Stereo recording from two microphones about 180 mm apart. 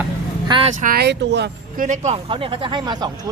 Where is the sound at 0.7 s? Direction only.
55° right (ahead or behind); by 1.5 s 75° right (ahead or behind).